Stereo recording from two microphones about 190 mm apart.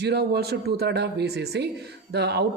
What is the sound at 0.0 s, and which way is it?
A woman's voice, 60° right (ahead or behind).